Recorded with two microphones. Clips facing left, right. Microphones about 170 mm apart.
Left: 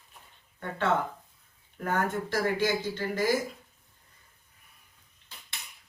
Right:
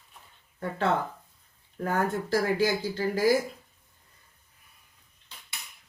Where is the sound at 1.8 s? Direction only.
35° right (ahead or behind).